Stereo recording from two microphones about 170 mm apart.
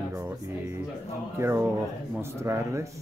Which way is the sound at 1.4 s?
15° right (ahead or behind).